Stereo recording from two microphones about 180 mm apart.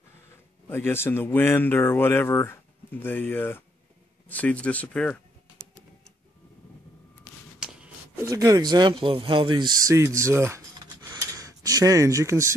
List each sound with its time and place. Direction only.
0.7 s speech: 10° left (ahead or behind)
7.6 s a sound: 5° right (ahead or behind)
8.3 s speech: 20° right (ahead or behind)